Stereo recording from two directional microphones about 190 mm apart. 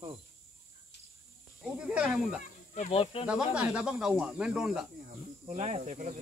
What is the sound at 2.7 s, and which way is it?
Speech, 35° left (ahead or behind).